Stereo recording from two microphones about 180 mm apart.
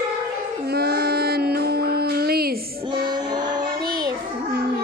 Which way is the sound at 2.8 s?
25° right (ahead or behind).